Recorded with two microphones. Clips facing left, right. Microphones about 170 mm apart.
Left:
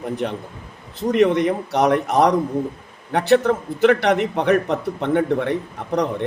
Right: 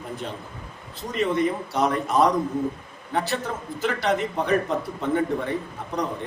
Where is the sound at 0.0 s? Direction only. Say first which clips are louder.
Left 8 dB; 65° left (ahead or behind).